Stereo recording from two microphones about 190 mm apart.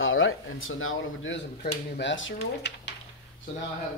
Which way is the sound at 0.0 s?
90° left.